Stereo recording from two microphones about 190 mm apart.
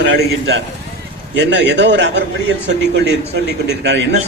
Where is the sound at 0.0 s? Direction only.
70° right (ahead or behind).